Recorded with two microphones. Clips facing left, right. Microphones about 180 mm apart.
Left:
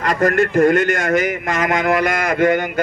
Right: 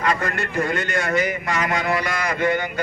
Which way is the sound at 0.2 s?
50° left (ahead or behind).